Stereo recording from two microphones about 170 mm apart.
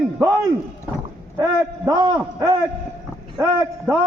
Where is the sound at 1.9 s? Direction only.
25° right (ahead or behind).